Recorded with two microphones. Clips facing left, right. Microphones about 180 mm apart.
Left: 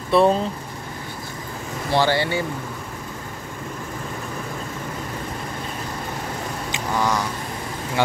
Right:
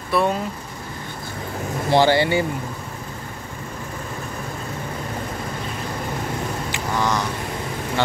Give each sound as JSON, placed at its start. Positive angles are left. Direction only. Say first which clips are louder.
{"t": 0.1, "sound": "speech", "louder": "left 4 dB", "side_deg": 30}
{"t": 2.0, "sound": "speech", "louder": "right 3 dB", "side_deg": -15}
{"t": 6.7, "sound": "a sound", "louder": "left 1 dB", "side_deg": 10}